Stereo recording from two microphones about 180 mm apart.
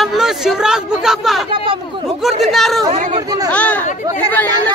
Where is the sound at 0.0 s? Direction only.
Centre (ahead or behind).